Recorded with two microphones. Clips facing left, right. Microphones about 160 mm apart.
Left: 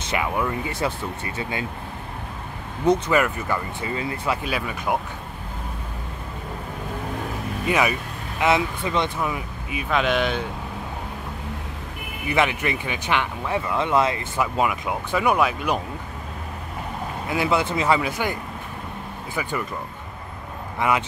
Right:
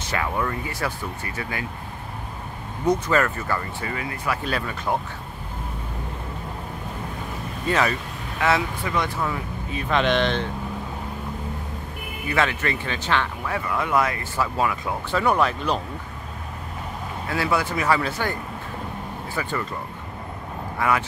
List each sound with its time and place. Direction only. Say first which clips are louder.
0.0 s speech: left 1 dB; 15° left (ahead or behind)
3.1 s speech: left 1 dB; 15° left (ahead or behind)
4.5 s speech: even; 10° left (ahead or behind)
7.6 s speech: even; 10° left (ahead or behind)
12.3 s speech: left 1 dB; 15° left (ahead or behind)
17.3 s speech: left 2 dB; 20° left (ahead or behind)
20.8 s speech: left 1 dB; 20° left (ahead or behind)